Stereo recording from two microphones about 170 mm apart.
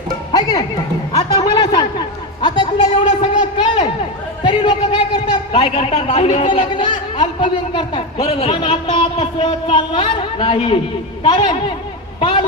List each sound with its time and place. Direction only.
0.3 s a man's voice: 25° left (ahead or behind)